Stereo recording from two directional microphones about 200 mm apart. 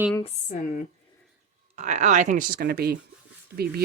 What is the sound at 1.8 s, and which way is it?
Speech, 35° right (ahead or behind).